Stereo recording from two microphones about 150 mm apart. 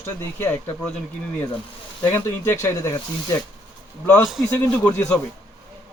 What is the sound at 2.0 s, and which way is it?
Speech, 15° left (ahead or behind).